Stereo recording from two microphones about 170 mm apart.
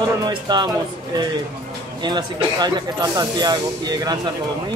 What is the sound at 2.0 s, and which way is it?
Speech, 25° right (ahead or behind).